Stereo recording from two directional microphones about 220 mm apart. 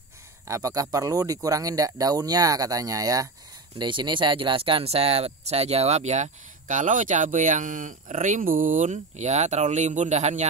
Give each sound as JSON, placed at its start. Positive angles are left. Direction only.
{"t": 0.5, "sound": "speech", "side_deg": -15}